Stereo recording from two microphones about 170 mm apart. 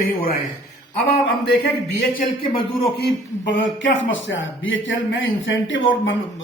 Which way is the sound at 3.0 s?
90° left.